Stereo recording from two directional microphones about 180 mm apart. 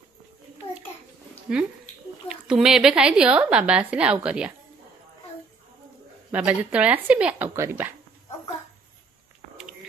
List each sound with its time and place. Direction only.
1.5 s a woman's voice: 5° right (ahead or behind)
6.3 s speech: 10° right (ahead or behind)